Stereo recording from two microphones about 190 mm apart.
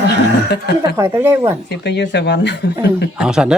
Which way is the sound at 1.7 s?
65° left (ahead or behind).